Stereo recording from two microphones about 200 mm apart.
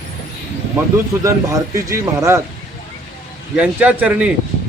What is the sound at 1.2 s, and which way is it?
A man's voice, 15° right (ahead or behind).